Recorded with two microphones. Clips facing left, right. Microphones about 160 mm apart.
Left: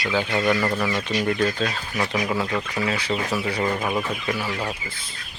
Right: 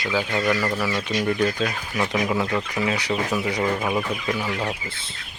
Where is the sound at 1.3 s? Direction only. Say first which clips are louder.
Right 1 dB; centre (ahead or behind).